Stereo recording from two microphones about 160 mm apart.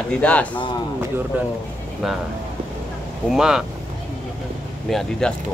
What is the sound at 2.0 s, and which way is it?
Speech, centre (ahead or behind).